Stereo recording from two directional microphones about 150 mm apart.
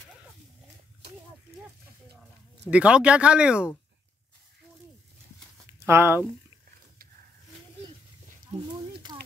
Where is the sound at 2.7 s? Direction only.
10° right (ahead or behind).